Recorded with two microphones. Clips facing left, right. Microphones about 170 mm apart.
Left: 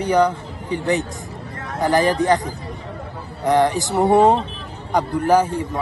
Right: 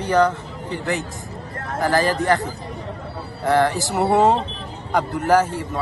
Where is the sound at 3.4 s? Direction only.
15° left (ahead or behind).